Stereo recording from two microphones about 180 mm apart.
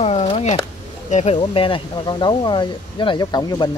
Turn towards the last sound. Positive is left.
turn(degrees=20)  # may be behind; listen again after turning